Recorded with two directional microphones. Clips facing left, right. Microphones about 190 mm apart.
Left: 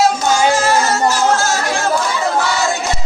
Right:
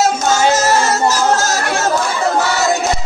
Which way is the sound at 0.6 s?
40° right (ahead or behind).